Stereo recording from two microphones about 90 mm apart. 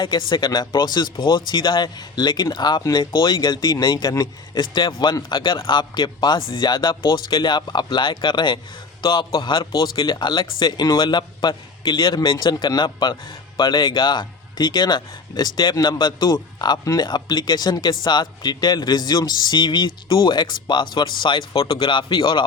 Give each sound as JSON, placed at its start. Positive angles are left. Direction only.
{"t": 0.0, "sound": "speech", "side_deg": 60}